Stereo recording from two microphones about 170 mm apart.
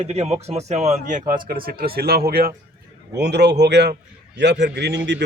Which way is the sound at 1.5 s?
60° right (ahead or behind).